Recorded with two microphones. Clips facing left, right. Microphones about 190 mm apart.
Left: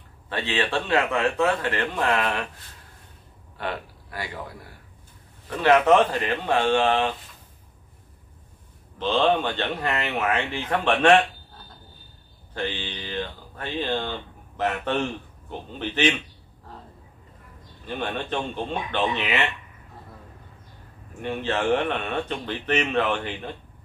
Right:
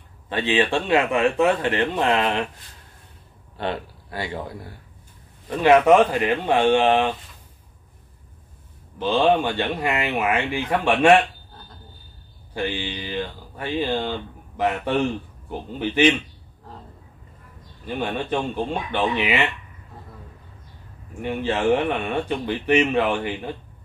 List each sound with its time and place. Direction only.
0.3 s speech: 15° right (ahead or behind)
3.5 s a man's voice: 25° right (ahead or behind)
5.5 s speech: 15° right (ahead or behind)
8.9 s speech: 10° right (ahead or behind)
12.5 s speech: 10° right (ahead or behind)
15.8 s speech: 10° right (ahead or behind)
17.8 s speech: 10° right (ahead or behind)
21.2 s speech: 10° right (ahead or behind)